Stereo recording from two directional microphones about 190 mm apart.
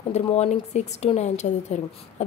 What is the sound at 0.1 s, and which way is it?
A woman's voice, 35° left (ahead or behind).